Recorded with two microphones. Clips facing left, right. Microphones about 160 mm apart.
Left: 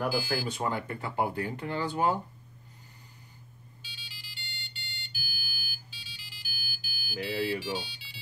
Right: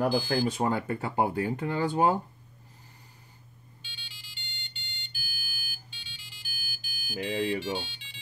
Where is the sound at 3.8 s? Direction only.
5° left (ahead or behind).